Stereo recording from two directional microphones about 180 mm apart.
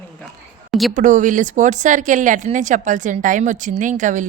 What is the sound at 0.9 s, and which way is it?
Speech, 45° right (ahead or behind).